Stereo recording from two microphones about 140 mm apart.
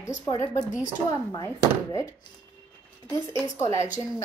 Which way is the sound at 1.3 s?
25° left (ahead or behind).